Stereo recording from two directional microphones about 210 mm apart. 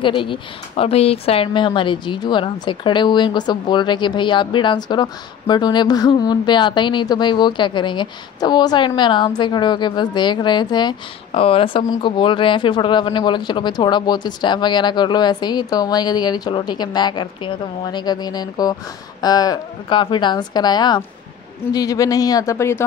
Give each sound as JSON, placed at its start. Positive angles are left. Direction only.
{"t": 0.0, "sound": "a woman's voice", "side_deg": 25}